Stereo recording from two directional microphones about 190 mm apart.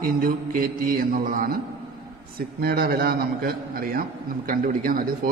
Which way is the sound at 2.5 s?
55° right (ahead or behind).